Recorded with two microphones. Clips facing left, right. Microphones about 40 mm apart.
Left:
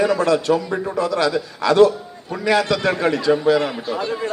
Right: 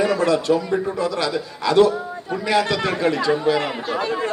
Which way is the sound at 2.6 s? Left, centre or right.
Right.